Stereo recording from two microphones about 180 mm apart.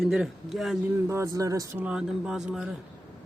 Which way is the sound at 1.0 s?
15° right (ahead or behind).